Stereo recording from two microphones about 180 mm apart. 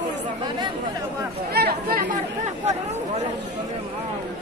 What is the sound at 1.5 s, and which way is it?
Speech, 60° right (ahead or behind).